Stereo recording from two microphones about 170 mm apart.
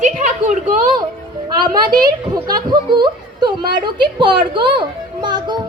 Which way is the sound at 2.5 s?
25° right (ahead or behind).